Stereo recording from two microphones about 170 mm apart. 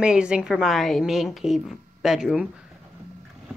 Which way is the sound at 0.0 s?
5° right (ahead or behind).